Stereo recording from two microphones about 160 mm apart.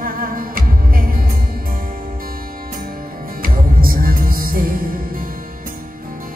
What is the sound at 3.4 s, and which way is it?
Music, 65° right (ahead or behind).